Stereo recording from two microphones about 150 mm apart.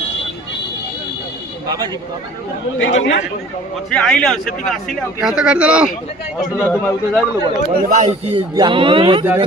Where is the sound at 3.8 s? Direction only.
5° left (ahead or behind).